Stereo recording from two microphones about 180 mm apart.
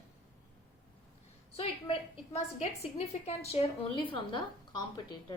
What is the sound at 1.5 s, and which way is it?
A woman's voice, 35° left (ahead or behind).